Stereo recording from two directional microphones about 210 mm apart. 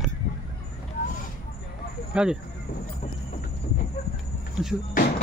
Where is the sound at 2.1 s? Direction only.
5° right (ahead or behind).